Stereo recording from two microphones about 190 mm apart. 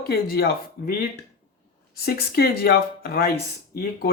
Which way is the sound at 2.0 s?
55° left (ahead or behind).